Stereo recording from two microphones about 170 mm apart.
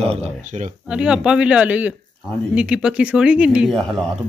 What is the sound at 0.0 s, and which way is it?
Speech, 40° right (ahead or behind).